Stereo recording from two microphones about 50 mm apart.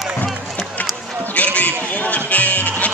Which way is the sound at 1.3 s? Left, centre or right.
Left.